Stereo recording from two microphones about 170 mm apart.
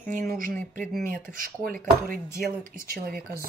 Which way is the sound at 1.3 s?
55° right (ahead or behind).